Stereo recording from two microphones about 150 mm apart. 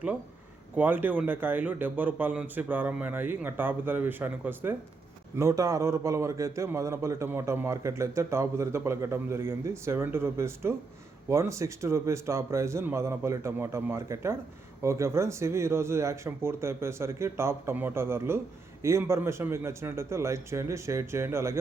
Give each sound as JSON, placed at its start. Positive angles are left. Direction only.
{"t": 0.8, "sound": "a man's voice", "side_deg": -10}